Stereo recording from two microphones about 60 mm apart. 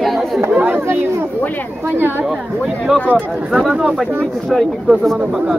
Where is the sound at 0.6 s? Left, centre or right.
Right.